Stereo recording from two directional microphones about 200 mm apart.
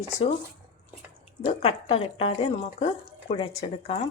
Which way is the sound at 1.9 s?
30° left (ahead or behind).